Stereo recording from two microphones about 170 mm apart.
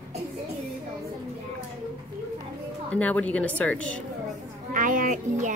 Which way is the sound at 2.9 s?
10° left (ahead or behind).